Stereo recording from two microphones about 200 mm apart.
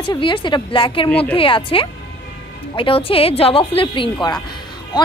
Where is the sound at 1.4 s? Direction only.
25° left (ahead or behind).